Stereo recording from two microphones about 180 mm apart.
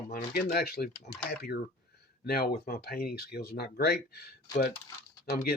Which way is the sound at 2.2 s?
55° left (ahead or behind).